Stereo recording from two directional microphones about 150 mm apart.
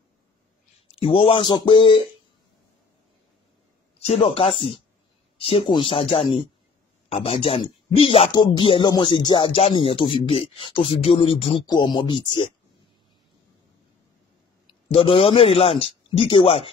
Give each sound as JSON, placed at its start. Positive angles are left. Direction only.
{"t": 0.9, "sound": "a man's voice", "side_deg": 40}
{"t": 4.0, "sound": "a man's voice", "side_deg": 45}
{"t": 11.6, "sound": "a man's voice", "side_deg": 30}
{"t": 14.7, "sound": "speech", "side_deg": 35}